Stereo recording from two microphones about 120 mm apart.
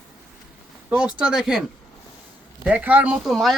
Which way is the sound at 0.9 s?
10° right (ahead or behind).